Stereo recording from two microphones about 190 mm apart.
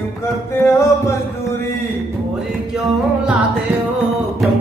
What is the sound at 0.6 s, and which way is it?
Music, 15° left (ahead or behind).